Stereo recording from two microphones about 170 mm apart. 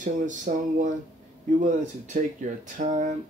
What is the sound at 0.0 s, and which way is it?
Music, 50° right (ahead or behind).